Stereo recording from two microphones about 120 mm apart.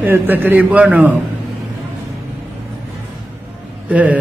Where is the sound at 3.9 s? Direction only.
10° right (ahead or behind).